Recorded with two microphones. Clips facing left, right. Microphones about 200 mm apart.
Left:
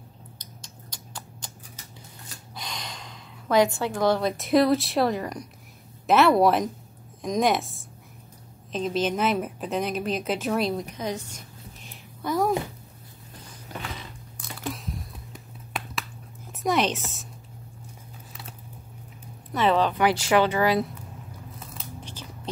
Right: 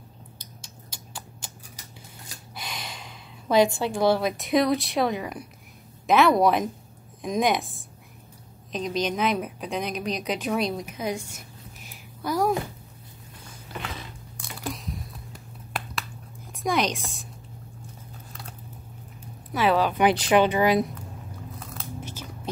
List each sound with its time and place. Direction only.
0.6 s typing: 5° right (ahead or behind)
2.2 s speech: 5° right (ahead or behind)
11.9 s a sound: centre (ahead or behind)
14.6 s a sound: centre (ahead or behind)
16.5 s a woman's voice: 5° left (ahead or behind)
19.5 s speech: 5° right (ahead or behind)
20.0 s speech: 20° right (ahead or behind)
22.0 s biting: 10° right (ahead or behind)